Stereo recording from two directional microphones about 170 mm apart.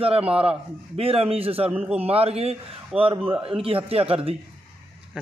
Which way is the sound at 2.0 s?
35° right (ahead or behind).